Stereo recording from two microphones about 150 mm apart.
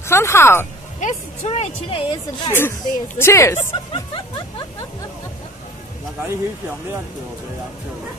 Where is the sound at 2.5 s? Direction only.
15° left (ahead or behind).